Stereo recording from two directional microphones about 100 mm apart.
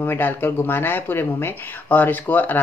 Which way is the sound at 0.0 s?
20° left (ahead or behind).